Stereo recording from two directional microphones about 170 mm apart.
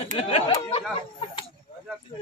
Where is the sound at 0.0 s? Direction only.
40° left (ahead or behind).